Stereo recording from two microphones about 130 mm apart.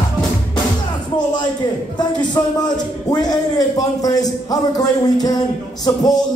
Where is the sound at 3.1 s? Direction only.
30° left (ahead or behind).